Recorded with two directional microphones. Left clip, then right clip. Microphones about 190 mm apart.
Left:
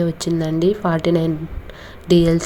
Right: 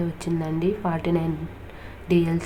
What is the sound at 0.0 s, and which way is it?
A woman's voice, 20° left (ahead or behind).